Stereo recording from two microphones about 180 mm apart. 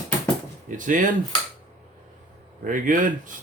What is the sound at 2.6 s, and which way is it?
Speech, 45° right (ahead or behind).